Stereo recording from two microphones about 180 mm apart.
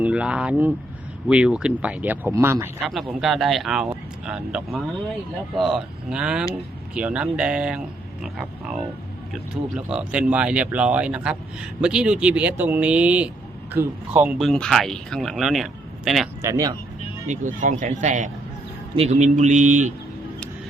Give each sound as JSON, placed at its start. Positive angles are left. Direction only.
{"t": 0.0, "sound": "speech", "side_deg": -5}
{"t": 2.8, "sound": "speech", "side_deg": 0}
{"t": 14.4, "sound": "speech", "side_deg": 0}
{"t": 16.4, "sound": "speech", "side_deg": -15}
{"t": 17.2, "sound": "speech", "side_deg": -45}